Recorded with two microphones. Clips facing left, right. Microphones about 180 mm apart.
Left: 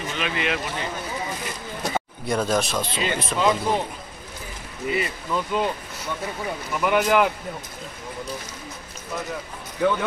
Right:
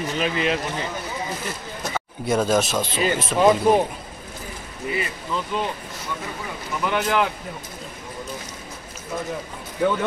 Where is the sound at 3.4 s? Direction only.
15° right (ahead or behind).